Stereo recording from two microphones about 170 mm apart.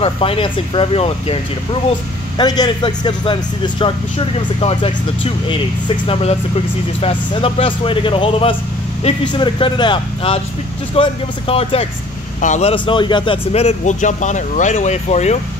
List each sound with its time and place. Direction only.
0.0 s a man's voice: 35° left (ahead or behind)